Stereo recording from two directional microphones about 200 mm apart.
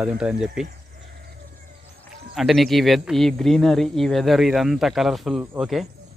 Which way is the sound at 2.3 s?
Centre (ahead or behind).